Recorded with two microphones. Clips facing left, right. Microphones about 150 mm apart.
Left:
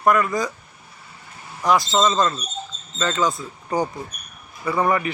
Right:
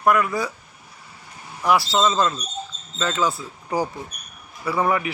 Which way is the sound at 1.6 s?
5° right (ahead or behind).